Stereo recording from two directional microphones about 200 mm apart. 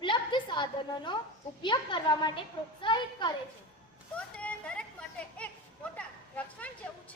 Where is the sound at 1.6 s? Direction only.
20° left (ahead or behind).